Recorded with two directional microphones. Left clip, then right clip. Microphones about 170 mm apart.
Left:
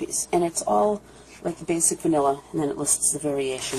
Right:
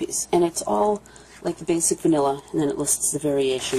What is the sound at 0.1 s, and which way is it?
A woman's voice, 30° right (ahead or behind).